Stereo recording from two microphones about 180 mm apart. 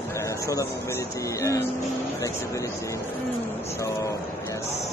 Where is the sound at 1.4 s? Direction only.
15° left (ahead or behind).